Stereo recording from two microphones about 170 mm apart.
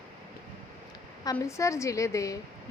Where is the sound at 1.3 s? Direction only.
15° left (ahead or behind).